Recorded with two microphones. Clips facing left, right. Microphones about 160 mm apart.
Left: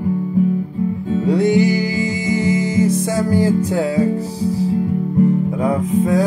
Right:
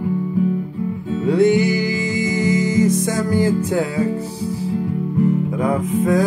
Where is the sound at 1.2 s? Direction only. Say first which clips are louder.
Even; 35° left (ahead or behind).